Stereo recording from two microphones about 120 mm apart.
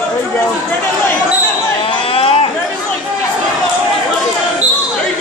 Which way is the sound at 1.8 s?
50° left (ahead or behind).